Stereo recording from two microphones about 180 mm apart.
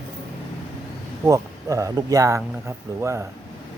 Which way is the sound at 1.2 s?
20° right (ahead or behind).